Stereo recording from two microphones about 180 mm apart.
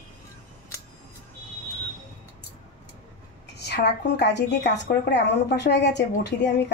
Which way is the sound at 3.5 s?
65° left (ahead or behind).